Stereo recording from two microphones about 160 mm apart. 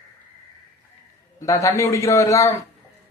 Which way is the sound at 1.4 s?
20° left (ahead or behind).